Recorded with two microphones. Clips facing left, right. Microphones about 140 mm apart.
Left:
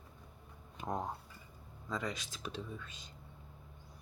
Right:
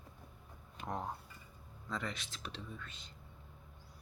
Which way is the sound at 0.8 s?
20° left (ahead or behind).